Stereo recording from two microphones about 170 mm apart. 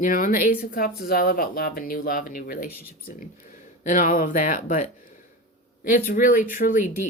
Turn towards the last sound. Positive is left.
turn(degrees=50)  # may be behind; listen again after turning